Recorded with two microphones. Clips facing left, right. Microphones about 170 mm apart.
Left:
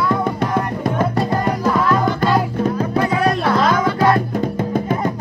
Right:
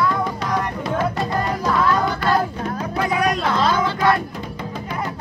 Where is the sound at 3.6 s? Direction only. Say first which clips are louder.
Left 1 dB; 30° right (ahead or behind).